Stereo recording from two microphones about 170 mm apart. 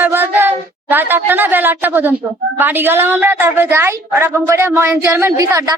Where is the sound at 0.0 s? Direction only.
15° right (ahead or behind).